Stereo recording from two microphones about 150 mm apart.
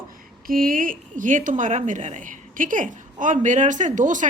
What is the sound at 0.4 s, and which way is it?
A woman's voice, 70° right (ahead or behind).